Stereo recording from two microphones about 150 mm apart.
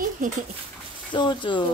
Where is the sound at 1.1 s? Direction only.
30° left (ahead or behind).